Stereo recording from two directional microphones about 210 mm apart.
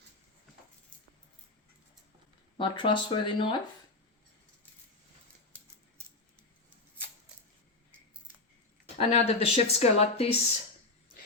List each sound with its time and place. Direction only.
2.6 s speech: 25° left (ahead or behind)
9.0 s speech: 30° left (ahead or behind)